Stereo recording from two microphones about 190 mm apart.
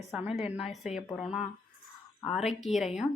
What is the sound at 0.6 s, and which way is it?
Speech, 35° left (ahead or behind).